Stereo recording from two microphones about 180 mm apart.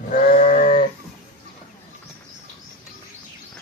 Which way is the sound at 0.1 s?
45° left (ahead or behind).